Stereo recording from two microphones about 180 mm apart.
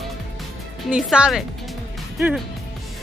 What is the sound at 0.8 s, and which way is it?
Speech, 5° right (ahead or behind).